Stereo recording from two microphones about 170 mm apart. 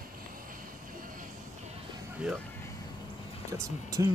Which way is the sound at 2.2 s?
Centre (ahead or behind).